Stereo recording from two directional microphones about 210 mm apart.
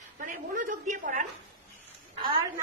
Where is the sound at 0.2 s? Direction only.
40° right (ahead or behind).